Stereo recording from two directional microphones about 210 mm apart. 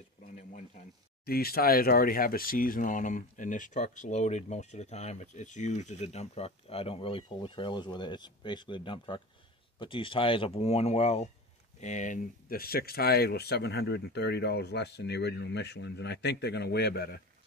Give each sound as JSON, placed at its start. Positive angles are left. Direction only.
{"t": 1.2, "sound": "speech", "side_deg": 45}